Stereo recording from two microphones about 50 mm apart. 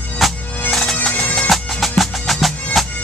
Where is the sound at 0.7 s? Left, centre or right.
Centre.